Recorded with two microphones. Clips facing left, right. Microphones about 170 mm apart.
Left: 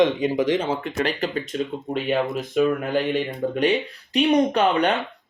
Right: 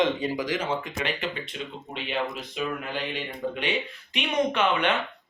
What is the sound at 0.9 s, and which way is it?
Speech, 40° left (ahead or behind).